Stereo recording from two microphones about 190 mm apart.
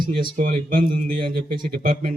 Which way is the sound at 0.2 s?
45° right (ahead or behind).